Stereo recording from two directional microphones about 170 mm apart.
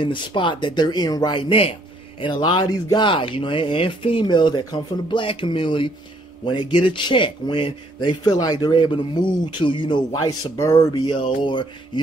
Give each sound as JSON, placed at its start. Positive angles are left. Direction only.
{"t": 0.0, "sound": "speech", "side_deg": 30}
{"t": 11.1, "sound": "speech", "side_deg": 30}